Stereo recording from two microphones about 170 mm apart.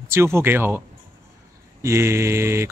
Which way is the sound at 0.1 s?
15° right (ahead or behind).